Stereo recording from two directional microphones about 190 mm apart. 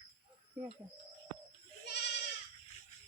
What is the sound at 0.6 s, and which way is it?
Speech, 10° right (ahead or behind).